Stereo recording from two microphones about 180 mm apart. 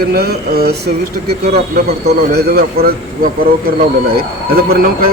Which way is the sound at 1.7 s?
60° right (ahead or behind).